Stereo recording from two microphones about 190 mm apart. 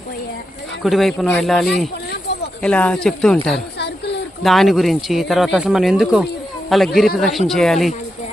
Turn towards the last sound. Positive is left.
turn(degrees=0)  # may be behind; listen again after turning